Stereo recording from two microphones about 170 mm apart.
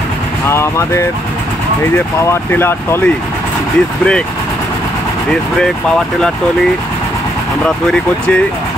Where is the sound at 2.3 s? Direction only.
15° left (ahead or behind).